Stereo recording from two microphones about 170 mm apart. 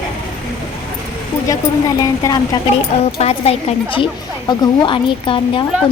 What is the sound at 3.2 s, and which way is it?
A woman's voice, 35° left (ahead or behind).